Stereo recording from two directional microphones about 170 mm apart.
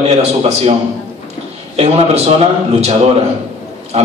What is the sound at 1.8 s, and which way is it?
Speech, 40° right (ahead or behind).